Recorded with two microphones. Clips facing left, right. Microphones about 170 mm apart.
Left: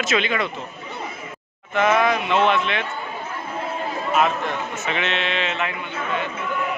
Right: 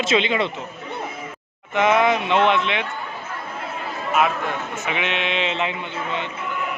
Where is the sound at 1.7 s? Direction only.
20° right (ahead or behind).